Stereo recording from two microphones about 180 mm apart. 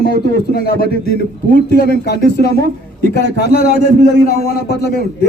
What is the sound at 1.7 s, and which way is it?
A man's voice, 60° left (ahead or behind).